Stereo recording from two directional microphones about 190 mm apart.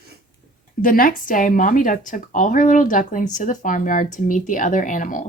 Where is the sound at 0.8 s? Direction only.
50° left (ahead or behind).